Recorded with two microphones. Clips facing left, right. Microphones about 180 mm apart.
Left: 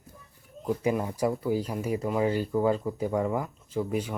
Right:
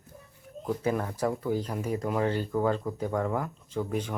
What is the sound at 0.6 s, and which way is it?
Speech, 10° left (ahead or behind).